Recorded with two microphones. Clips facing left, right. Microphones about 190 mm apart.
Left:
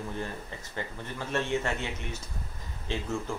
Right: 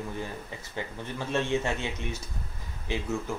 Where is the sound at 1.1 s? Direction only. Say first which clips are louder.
Right 2 dB; 15° right (ahead or behind).